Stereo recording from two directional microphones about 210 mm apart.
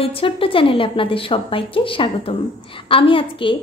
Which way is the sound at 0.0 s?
25° left (ahead or behind).